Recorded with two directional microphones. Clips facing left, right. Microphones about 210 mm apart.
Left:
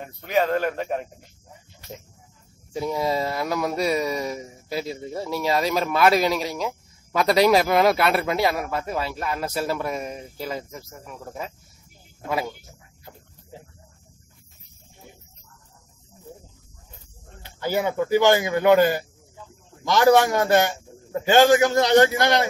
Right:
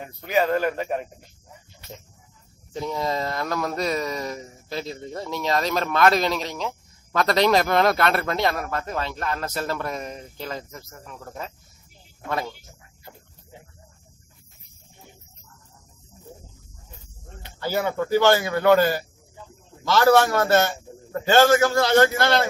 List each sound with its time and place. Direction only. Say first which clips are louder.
0.0 s a man's voice: even; 5° right (ahead or behind)
2.7 s speech: left 2 dB; 10° left (ahead or behind)
17.6 s speech: left 1 dB; 15° left (ahead or behind)